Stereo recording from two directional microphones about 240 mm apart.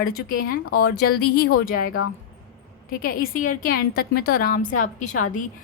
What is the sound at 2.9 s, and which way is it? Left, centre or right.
A woman's voice, left.